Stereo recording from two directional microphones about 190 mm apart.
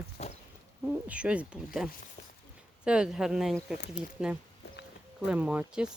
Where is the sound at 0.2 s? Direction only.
35° left (ahead or behind).